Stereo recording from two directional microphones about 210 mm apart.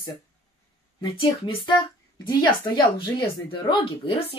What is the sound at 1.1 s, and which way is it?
Speech, 25° left (ahead or behind).